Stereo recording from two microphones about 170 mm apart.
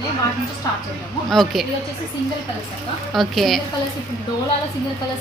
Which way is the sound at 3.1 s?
Centre (ahead or behind).